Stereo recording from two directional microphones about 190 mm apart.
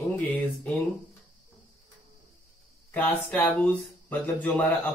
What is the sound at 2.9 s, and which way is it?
Speech, 10° left (ahead or behind).